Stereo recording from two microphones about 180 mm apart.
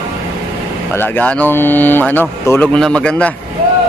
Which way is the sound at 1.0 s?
10° left (ahead or behind).